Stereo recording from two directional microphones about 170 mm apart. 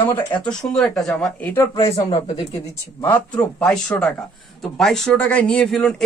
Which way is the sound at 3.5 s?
5° left (ahead or behind).